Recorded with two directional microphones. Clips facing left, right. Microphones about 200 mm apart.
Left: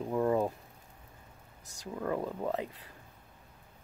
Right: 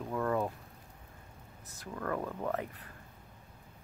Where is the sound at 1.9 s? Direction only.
15° left (ahead or behind).